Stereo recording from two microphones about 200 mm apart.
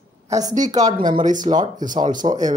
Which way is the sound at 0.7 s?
20° right (ahead or behind).